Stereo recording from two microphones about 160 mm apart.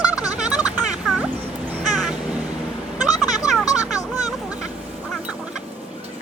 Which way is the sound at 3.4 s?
20° left (ahead or behind).